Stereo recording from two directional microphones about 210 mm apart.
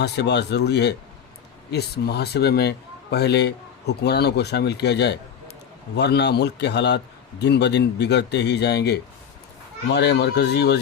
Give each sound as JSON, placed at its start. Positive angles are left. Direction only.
{"t": 0.0, "sound": "a man's voice", "side_deg": 55}